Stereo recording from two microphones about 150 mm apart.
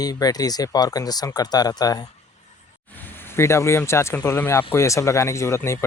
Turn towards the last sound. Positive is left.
turn(degrees=20)  # may be behind; listen again after turning